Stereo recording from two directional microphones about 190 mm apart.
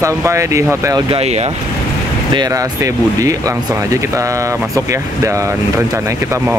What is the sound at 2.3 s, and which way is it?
Speech, 20° right (ahead or behind).